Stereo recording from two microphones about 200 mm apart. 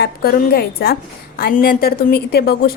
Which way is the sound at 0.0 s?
50° left (ahead or behind).